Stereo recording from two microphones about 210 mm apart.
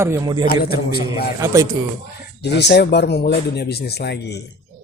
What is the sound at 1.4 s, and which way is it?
Speech, 15° right (ahead or behind).